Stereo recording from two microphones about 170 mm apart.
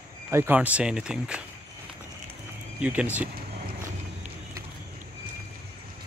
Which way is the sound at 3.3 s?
50° right (ahead or behind).